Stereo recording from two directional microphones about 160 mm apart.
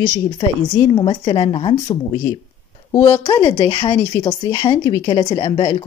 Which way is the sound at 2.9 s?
15° left (ahead or behind).